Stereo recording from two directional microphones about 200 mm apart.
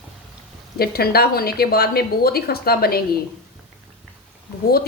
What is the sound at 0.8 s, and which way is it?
A woman's voice, 50° left (ahead or behind).